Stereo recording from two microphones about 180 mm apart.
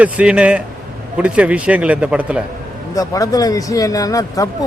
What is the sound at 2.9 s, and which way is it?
Speech, 20° left (ahead or behind).